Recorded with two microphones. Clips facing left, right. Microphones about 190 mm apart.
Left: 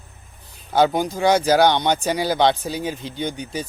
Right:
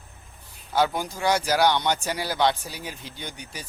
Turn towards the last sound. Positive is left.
turn(degrees=20)  # may be behind; listen again after turning